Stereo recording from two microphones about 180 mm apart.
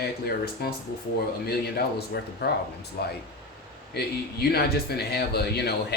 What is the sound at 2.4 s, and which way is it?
Speech, 65° left (ahead or behind).